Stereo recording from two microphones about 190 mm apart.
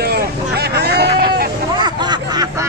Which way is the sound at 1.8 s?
20° right (ahead or behind).